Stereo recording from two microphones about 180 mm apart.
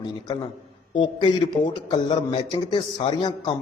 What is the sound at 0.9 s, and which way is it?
A man's voice, 25° left (ahead or behind).